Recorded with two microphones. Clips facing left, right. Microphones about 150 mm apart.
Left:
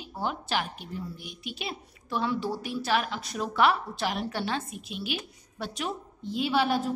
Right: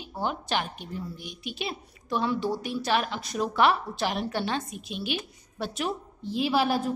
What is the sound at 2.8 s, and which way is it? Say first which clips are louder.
A woman's voice: even; 25° right (ahead or behind).